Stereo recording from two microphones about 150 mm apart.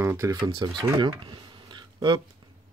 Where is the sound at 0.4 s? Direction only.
30° right (ahead or behind).